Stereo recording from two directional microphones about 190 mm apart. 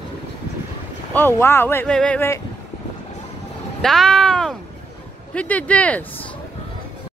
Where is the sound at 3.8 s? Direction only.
5° left (ahead or behind).